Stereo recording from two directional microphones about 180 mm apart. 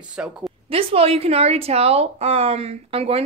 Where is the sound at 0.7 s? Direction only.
30° right (ahead or behind).